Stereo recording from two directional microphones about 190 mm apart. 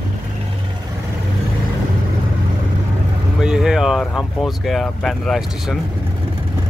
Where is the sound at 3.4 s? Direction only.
5° right (ahead or behind).